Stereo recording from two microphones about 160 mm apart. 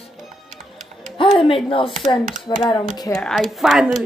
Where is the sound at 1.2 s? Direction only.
35° left (ahead or behind).